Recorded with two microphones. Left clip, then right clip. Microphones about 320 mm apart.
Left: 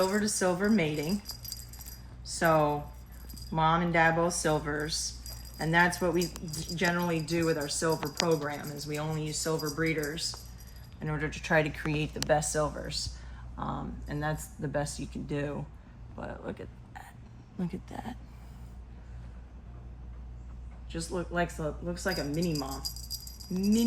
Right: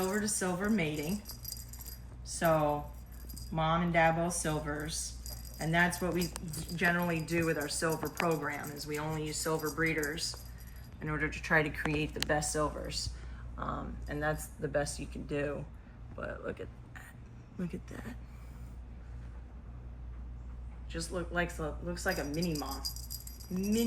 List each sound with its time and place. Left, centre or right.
0.0 s speech: left
2.4 s speech: left
20.9 s speech: left
22.3 s speech: centre
23.4 s speech: centre